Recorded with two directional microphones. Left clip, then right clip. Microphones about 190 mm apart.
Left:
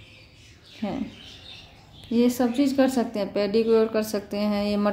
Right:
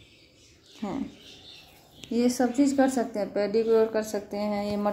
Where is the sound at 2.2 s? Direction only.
10° left (ahead or behind).